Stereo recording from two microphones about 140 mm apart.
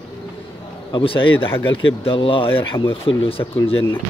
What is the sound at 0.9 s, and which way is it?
Speech, 40° left (ahead or behind).